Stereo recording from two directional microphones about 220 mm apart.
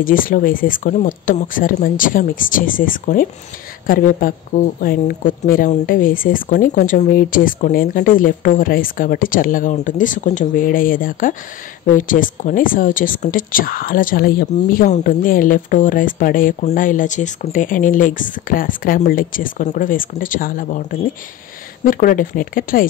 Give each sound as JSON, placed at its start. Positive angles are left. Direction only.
{"t": 0.0, "sound": "speech", "side_deg": 40}